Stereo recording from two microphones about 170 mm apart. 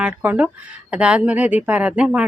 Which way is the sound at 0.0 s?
10° right (ahead or behind).